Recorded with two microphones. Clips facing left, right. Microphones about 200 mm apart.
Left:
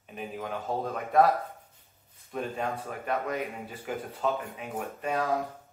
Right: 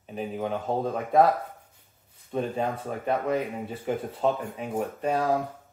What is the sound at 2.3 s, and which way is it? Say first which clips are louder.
Speech: right 4 dB; 30° right (ahead or behind).